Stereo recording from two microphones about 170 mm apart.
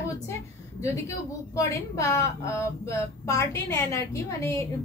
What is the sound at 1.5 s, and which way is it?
A woman's voice, 20° left (ahead or behind).